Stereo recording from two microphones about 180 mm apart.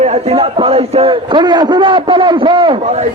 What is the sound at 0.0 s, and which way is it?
A man's voice, 35° right (ahead or behind).